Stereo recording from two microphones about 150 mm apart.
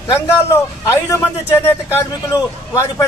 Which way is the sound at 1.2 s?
15° left (ahead or behind).